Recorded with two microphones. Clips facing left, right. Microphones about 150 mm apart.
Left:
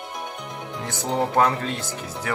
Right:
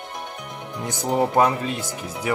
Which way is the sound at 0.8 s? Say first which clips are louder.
Right 3 dB; 15° right (ahead or behind).